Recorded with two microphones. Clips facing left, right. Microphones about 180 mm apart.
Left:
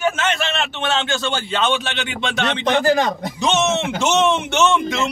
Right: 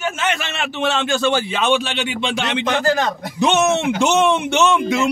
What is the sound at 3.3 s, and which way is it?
A man's voice, 15° right (ahead or behind).